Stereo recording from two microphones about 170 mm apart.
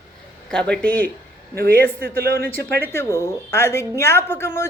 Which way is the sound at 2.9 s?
15° left (ahead or behind).